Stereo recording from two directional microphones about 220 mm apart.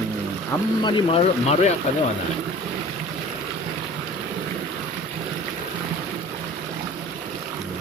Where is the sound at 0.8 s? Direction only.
25° left (ahead or behind).